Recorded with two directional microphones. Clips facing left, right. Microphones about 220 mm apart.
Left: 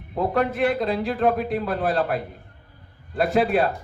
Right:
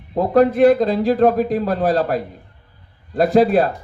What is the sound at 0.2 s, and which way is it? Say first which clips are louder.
A man's voice: right 9 dB; 40° right (ahead or behind).